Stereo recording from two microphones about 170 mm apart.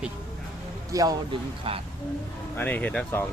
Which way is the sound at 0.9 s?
20° right (ahead or behind).